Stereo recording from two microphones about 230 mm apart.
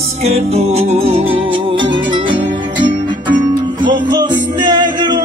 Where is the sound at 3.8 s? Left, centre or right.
Centre.